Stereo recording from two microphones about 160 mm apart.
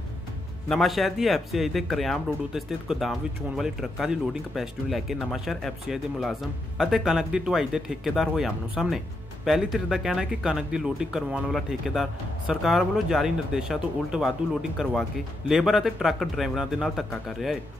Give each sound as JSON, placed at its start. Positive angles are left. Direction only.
{"t": 0.7, "sound": "speech", "side_deg": 0}